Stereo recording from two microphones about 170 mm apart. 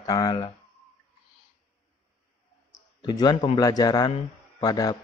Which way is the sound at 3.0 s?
25° left (ahead or behind).